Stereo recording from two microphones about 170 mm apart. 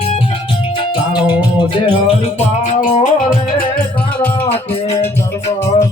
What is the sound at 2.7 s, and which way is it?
Music, 45° left (ahead or behind).